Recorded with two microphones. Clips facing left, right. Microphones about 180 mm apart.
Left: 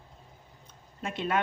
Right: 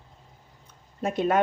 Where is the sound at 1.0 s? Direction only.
45° right (ahead or behind).